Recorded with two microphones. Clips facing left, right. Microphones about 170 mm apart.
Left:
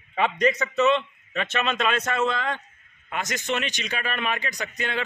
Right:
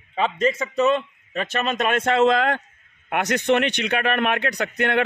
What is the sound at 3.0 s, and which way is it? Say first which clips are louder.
A man's voice: right 8 dB; 60° right (ahead or behind).